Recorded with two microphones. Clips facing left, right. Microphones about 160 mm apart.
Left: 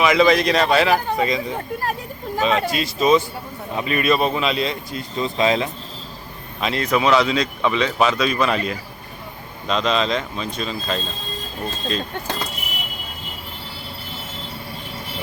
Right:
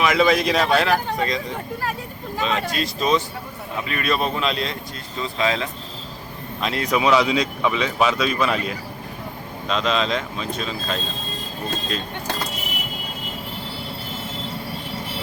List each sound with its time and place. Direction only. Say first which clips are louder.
0.0 s speech: left 2 dB; centre (ahead or behind)
3.8 s speech: left 5 dB; 20° left (ahead or behind)
4.0 s speech: left 3 dB; 5° left (ahead or behind)
5.2 s speech: left 4 dB; 20° left (ahead or behind)
6.6 s speech: left 2 dB; centre (ahead or behind)
6.8 s speech: left 1 dB; 10° right (ahead or behind)